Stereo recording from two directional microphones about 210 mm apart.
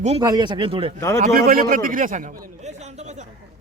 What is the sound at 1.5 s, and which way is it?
A man's voice, 40° right (ahead or behind).